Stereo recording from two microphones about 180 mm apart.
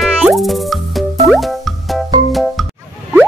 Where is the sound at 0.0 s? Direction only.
Centre (ahead or behind).